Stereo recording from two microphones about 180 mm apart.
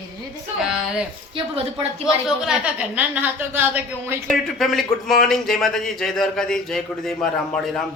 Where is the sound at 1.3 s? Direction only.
30° right (ahead or behind).